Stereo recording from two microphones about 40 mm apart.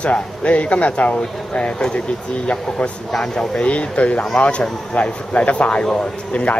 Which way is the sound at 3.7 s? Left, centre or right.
Left.